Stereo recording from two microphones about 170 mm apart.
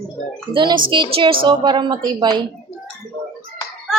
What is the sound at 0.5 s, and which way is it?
Speech, 25° right (ahead or behind).